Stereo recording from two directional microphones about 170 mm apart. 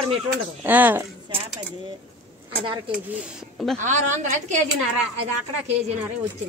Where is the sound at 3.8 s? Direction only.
45° right (ahead or behind).